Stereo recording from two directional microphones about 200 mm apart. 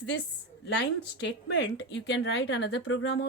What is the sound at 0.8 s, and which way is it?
A woman's voice, 60° left (ahead or behind).